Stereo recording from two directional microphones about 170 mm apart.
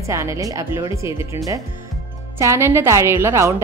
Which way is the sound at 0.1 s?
15° right (ahead or behind).